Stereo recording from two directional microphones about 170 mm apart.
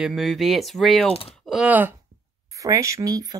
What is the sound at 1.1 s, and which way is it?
Speech, 35° left (ahead or behind).